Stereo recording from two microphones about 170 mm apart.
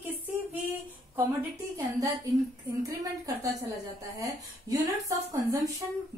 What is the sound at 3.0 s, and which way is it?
Speech, 20° right (ahead or behind).